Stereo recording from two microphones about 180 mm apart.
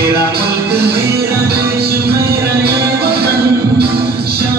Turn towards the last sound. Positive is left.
turn(degrees=-60)  # may be behind; listen again after turning